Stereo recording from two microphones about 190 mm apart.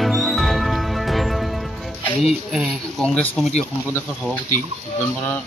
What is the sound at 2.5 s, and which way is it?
Speech, 5° right (ahead or behind).